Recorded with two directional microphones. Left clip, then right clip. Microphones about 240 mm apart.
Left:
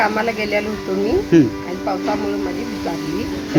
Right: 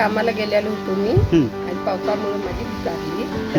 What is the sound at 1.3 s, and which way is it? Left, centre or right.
Speech, centre.